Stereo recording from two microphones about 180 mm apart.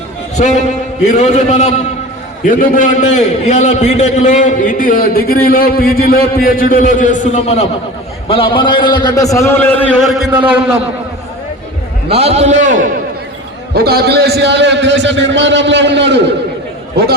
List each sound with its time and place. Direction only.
0.3 s a man's voice: 40° left (ahead or behind)
2.5 s a man's voice: 50° left (ahead or behind); by 10.4 s 5° right (ahead or behind)
12.0 s a man's voice: 35° right (ahead or behind)
13.7 s a man's voice: 60° right (ahead or behind); by 16.2 s 75° right (ahead or behind)
17.0 s a man's voice: 65° right (ahead or behind)